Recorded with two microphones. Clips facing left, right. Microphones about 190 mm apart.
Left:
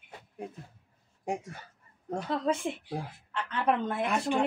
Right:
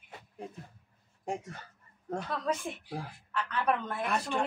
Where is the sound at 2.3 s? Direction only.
25° left (ahead or behind).